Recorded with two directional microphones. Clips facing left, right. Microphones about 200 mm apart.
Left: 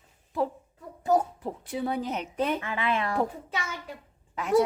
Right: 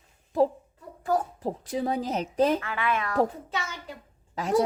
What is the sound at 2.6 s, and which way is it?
Speech, 25° left (ahead or behind).